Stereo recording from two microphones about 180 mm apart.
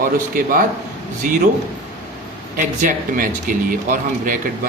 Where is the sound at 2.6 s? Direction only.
45° right (ahead or behind).